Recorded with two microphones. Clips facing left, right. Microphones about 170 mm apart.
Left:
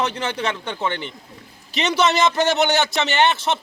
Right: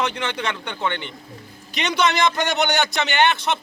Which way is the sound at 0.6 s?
5° left (ahead or behind).